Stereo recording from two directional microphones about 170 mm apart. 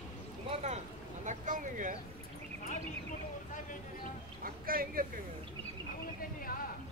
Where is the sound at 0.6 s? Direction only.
45° right (ahead or behind).